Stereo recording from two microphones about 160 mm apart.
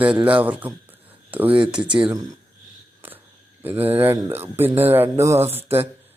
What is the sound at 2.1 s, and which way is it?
Speech, 20° right (ahead or behind).